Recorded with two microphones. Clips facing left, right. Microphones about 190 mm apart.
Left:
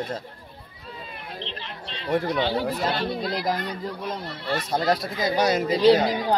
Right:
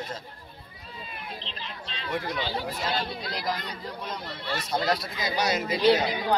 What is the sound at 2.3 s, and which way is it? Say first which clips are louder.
Speech: left 7 dB; 60° left (ahead or behind).